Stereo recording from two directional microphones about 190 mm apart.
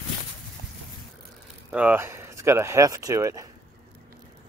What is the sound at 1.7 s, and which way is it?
Speech, 5° right (ahead or behind).